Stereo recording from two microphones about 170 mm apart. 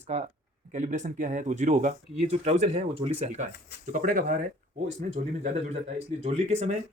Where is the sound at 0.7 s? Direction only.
45° right (ahead or behind).